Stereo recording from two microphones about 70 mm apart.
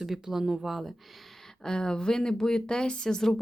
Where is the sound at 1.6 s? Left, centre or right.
Centre.